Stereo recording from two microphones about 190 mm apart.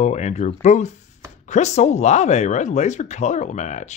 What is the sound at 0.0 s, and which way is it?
Speech, 35° left (ahead or behind).